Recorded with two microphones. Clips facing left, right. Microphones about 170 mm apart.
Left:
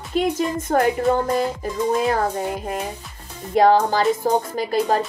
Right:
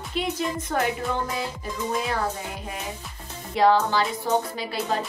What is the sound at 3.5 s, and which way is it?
Speech, 45° left (ahead or behind).